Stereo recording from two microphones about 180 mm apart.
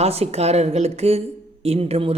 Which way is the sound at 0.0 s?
35° right (ahead or behind).